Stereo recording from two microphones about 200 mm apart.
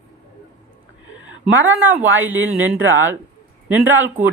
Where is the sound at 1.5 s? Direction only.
75° right (ahead or behind).